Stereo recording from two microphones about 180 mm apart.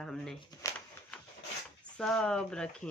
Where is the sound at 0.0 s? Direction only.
5° left (ahead or behind).